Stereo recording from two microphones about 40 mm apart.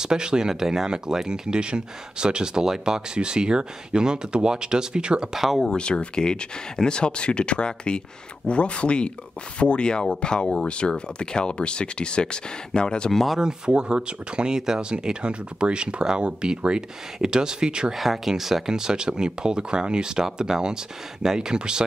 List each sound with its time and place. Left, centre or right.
0.0 s speech: centre
5.3 s speech: centre
5.8 s speech: left
13.1 s speech: centre
13.7 s speech: right
17.9 s speech: centre; by 21.8 s right